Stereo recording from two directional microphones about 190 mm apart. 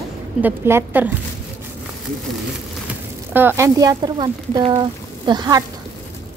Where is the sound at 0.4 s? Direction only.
10° right (ahead or behind).